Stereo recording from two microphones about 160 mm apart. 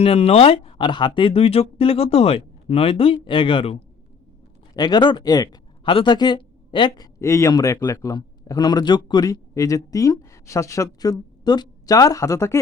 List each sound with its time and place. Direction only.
0.0 s speech: 40° left (ahead or behind)
4.7 s speech: 25° left (ahead or behind)